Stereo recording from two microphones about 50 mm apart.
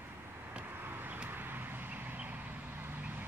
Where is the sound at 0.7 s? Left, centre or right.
Right.